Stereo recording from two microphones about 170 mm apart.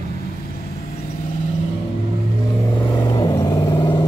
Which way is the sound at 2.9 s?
25° left (ahead or behind).